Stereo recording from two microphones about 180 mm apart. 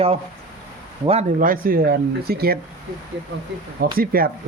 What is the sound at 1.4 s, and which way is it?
Speech, 50° right (ahead or behind).